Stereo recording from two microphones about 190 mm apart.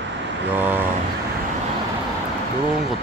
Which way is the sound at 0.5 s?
10° right (ahead or behind).